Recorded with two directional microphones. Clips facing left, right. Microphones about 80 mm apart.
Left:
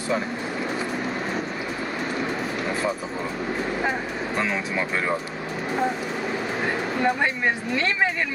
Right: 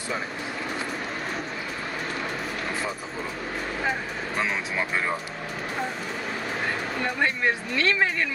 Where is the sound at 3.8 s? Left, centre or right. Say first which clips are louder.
Left 2 dB; centre.